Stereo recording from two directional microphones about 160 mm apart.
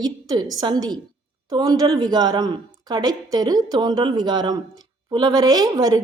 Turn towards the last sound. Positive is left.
turn(degrees=-25)  # may be behind; listen again after turning